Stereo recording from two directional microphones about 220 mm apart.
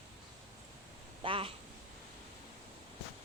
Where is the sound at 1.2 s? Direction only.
25° right (ahead or behind).